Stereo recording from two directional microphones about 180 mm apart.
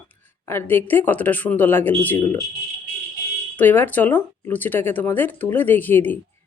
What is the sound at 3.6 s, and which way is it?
Speech, 10° left (ahead or behind).